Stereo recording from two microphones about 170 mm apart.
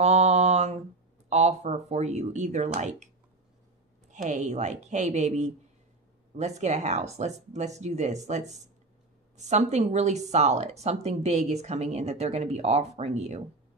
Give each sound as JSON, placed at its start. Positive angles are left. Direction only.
{"t": 0.0, "sound": "mantra", "side_deg": -40}
{"t": 1.3, "sound": "a woman's voice", "side_deg": -40}
{"t": 4.3, "sound": "a woman's voice", "side_deg": -45}